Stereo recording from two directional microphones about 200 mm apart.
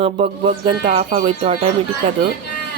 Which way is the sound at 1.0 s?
40° right (ahead or behind).